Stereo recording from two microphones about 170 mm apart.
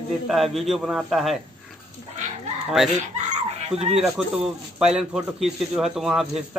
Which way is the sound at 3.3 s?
40° right (ahead or behind).